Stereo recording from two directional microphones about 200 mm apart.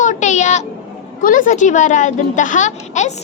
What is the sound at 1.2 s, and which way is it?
A child's voice, 40° left (ahead or behind).